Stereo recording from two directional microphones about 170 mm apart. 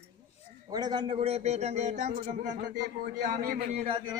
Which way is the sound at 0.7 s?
25° right (ahead or behind).